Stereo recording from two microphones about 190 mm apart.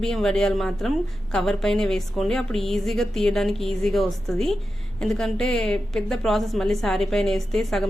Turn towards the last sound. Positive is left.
turn(degrees=0)  # may be behind; listen again after turning